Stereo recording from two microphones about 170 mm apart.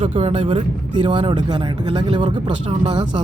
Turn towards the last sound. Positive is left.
turn(degrees=-25)  # may be behind; listen again after turning